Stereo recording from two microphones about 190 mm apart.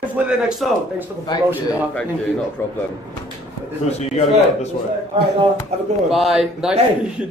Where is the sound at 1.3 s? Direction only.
25° left (ahead or behind).